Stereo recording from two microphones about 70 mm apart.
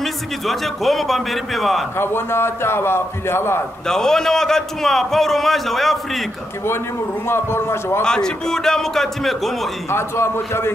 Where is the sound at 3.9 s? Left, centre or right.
Centre.